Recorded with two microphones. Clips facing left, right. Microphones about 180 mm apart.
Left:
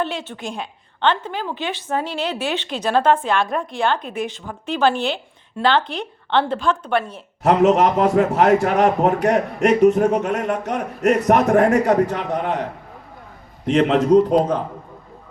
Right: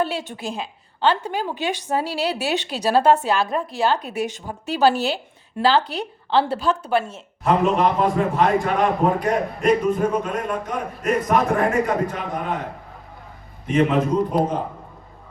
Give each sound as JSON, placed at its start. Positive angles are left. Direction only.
{"t": 0.3, "sound": "a woman's voice", "side_deg": -5}
{"t": 1.5, "sound": "speech", "side_deg": -40}
{"t": 1.9, "sound": "a woman's voice", "side_deg": -10}
{"t": 2.2, "sound": "speech", "side_deg": -40}
{"t": 3.2, "sound": "a woman's voice", "side_deg": -5}
{"t": 4.1, "sound": "speech", "side_deg": -40}
{"t": 4.7, "sound": "a woman's voice", "side_deg": -5}
{"t": 7.4, "sound": "a man's voice", "side_deg": 75}
{"t": 13.7, "sound": "a man's voice", "side_deg": 80}